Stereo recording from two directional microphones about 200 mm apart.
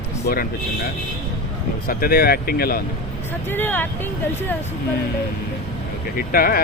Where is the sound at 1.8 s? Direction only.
50° left (ahead or behind).